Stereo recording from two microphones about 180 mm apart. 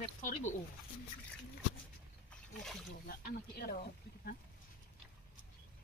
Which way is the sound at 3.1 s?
55° left (ahead or behind).